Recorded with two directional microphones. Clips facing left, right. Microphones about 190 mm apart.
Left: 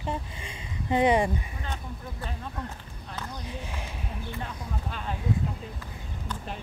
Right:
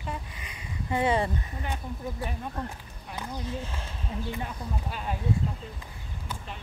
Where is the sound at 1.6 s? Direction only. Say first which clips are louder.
Right 3 dB; 15° right (ahead or behind).